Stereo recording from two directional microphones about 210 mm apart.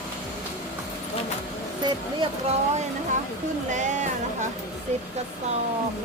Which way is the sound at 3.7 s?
35° right (ahead or behind).